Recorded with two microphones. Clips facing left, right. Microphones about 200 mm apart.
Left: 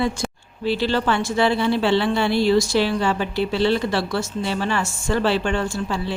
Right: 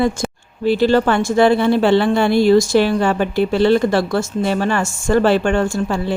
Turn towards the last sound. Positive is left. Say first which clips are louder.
# right 6 dB
turn(degrees=-50)  # may be behind; listen again after turning